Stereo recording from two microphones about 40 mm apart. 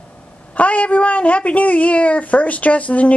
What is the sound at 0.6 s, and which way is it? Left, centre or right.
A woman's voice, left.